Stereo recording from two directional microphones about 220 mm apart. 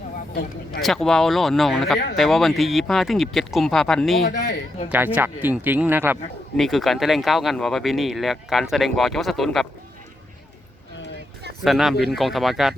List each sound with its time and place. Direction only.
0.8 s speech: centre (ahead or behind)
4.3 s speech: 55° left (ahead or behind)
4.9 s speech: 10° right (ahead or behind)
11.6 s speech: centre (ahead or behind)